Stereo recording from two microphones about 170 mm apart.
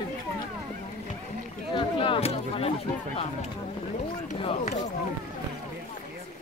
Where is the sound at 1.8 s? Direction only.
30° left (ahead or behind).